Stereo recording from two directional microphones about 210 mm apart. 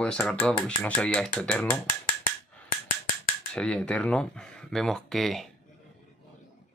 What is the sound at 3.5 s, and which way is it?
Speech, 5° left (ahead or behind).